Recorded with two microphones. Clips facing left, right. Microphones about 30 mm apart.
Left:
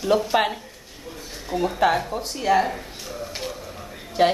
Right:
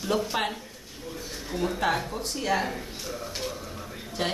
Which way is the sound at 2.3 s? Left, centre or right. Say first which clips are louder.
Left 7 dB; centre.